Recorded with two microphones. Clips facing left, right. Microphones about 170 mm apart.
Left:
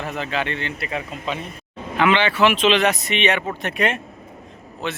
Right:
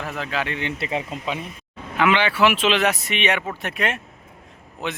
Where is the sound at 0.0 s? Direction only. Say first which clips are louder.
Left 2 dB; centre (ahead or behind).